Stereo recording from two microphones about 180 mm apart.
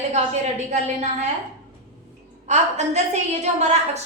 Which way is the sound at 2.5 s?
40° right (ahead or behind).